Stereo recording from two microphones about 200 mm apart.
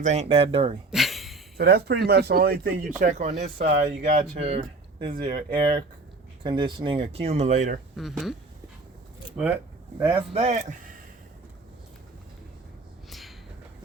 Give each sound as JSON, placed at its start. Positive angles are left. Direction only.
{"t": 0.0, "sound": "speech", "side_deg": -35}
{"t": 0.9, "sound": "a sound", "side_deg": 0}
{"t": 1.5, "sound": "speech", "side_deg": -55}
{"t": 6.4, "sound": "speech", "side_deg": -25}
{"t": 7.9, "sound": "speech", "side_deg": 0}
{"t": 10.0, "sound": "speech", "side_deg": -25}
{"t": 13.1, "sound": "a sound", "side_deg": 0}